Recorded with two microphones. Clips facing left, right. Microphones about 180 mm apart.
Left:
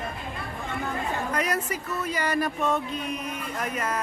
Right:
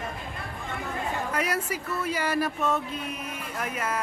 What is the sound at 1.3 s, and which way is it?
Speech, 5° right (ahead or behind).